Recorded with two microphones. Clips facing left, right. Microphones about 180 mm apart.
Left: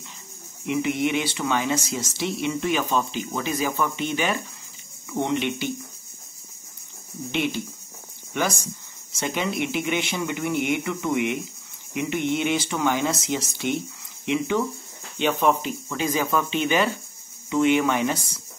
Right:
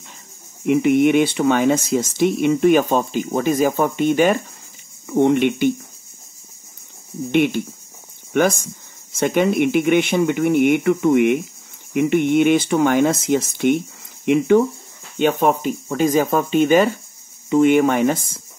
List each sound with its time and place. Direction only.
0.7 s speech: 55° right (ahead or behind)
7.2 s speech: 55° right (ahead or behind)